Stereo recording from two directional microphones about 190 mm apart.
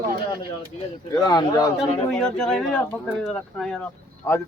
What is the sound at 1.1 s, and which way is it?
Speech, 20° left (ahead or behind).